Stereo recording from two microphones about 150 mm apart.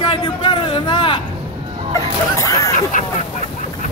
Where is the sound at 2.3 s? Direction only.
20° left (ahead or behind).